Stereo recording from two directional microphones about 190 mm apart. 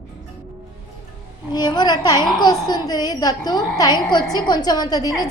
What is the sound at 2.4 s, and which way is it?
A woman's voice, 20° left (ahead or behind).